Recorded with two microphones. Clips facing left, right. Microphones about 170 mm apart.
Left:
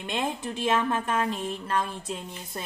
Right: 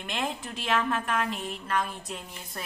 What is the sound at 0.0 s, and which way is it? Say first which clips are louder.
Speech: left 3 dB; 25° left (ahead or behind).